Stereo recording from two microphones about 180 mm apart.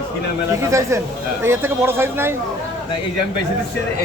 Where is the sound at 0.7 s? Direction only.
15° right (ahead or behind).